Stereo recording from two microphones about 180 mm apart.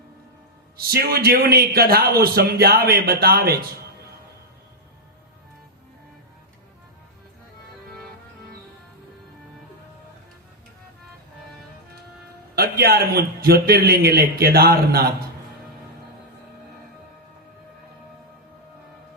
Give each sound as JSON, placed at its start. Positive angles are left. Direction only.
{"t": 0.8, "sound": "a man's voice", "side_deg": -55}
{"t": 12.5, "sound": "a man's voice", "side_deg": -60}